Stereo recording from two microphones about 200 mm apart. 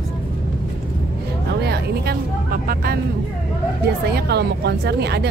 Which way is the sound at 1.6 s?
55° right (ahead or behind).